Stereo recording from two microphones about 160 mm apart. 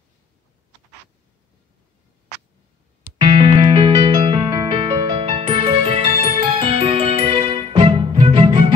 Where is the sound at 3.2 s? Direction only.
30° right (ahead or behind).